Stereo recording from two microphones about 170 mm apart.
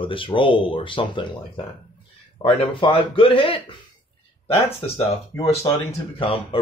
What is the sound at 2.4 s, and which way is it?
Speech, 30° left (ahead or behind).